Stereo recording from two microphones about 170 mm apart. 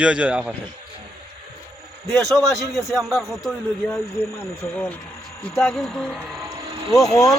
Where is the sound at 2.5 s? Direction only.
Centre (ahead or behind).